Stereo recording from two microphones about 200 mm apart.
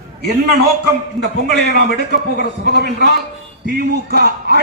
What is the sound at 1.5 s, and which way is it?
A man's voice, 55° right (ahead or behind).